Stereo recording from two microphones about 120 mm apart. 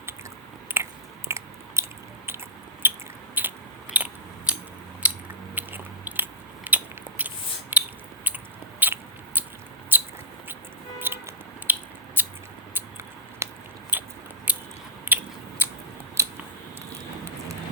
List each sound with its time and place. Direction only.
0.8 s biting: 20° right (ahead or behind)
3.9 s scissors: 10° right (ahead or behind)
5.0 s biting: 10° right (ahead or behind)
8.8 s a sound: 15° right (ahead or behind)
9.9 s squeak: 15° right (ahead or behind)
11.1 s a sound: 20° right (ahead or behind)
13.4 s biting: 20° right (ahead or behind)